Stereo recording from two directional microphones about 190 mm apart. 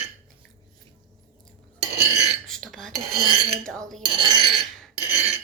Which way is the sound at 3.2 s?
30° right (ahead or behind).